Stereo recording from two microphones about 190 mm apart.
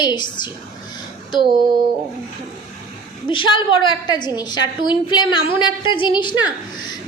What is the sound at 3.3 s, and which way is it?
A woman's voice, 25° left (ahead or behind).